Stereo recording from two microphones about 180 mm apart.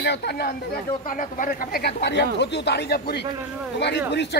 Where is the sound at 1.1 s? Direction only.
45° left (ahead or behind).